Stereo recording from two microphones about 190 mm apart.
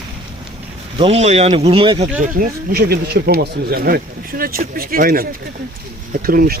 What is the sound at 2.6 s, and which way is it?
Speech, 55° right (ahead or behind).